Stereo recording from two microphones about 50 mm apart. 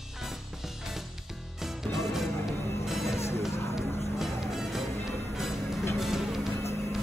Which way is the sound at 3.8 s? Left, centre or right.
Left.